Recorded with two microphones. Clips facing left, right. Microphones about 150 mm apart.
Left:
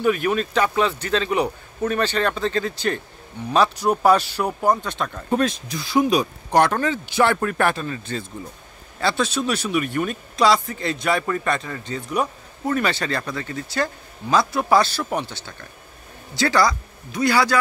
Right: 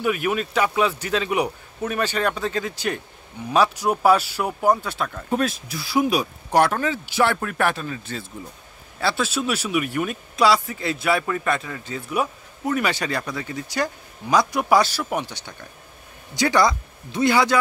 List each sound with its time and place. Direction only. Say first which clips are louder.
0.0 s speech: left 3 dB; 10° right (ahead or behind)